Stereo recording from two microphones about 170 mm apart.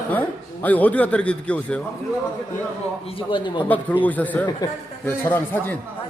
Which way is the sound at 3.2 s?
30° left (ahead or behind).